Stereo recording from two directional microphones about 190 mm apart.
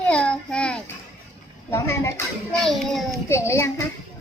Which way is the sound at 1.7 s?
15° left (ahead or behind).